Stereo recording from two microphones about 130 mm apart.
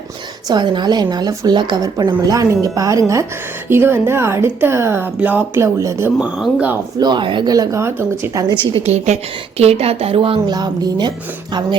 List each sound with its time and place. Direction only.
0.4 s a woman's voice: 35° right (ahead or behind); by 5.6 s 10° right (ahead or behind)
5.8 s a woman's voice: 20° right (ahead or behind)
6.1 s speech: 10° right (ahead or behind)
7.0 s a woman's voice: 35° right (ahead or behind)
8.8 s a woman's voice: 60° right (ahead or behind); by 11.1 s 30° right (ahead or behind)